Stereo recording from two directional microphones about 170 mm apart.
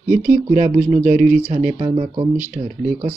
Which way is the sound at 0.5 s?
40° right (ahead or behind).